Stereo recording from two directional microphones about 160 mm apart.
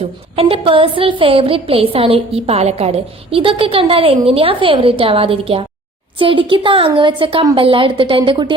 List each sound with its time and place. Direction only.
0.3 s a woman's voice: 35° right (ahead or behind)